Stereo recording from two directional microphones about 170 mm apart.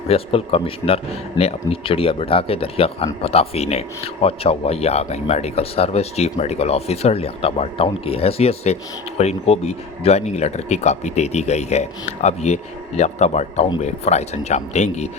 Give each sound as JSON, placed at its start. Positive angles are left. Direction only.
{"t": 0.1, "sound": "speech", "side_deg": 35}